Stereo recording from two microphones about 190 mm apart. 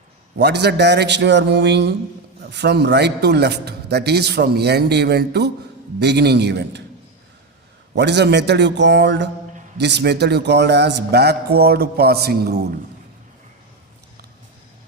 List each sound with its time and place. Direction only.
0.3 s a man's voice: 60° right (ahead or behind)
7.9 s a man's voice: 65° right (ahead or behind)